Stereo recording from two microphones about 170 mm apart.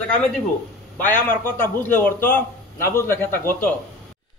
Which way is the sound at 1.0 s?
10° left (ahead or behind).